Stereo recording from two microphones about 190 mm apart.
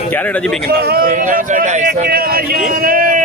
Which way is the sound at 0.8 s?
55° right (ahead or behind).